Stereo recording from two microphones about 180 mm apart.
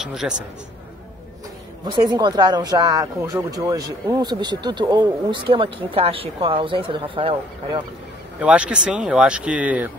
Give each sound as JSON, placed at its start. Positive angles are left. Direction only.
{"t": 0.0, "sound": "a man's voice", "side_deg": -5}
{"t": 1.9, "sound": "speech", "side_deg": -25}
{"t": 8.4, "sound": "speech", "side_deg": -5}